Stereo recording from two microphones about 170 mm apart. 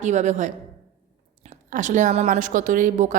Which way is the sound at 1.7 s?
45° right (ahead or behind).